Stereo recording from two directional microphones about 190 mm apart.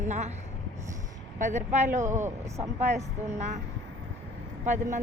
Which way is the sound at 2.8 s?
35° right (ahead or behind).